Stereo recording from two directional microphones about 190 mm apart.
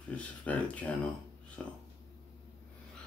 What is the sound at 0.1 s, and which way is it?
Speech, 5° left (ahead or behind).